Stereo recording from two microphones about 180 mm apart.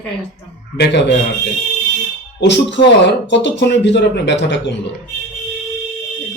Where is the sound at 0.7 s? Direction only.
70° left (ahead or behind).